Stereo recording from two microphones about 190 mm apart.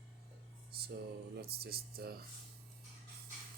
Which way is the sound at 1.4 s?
55° right (ahead or behind).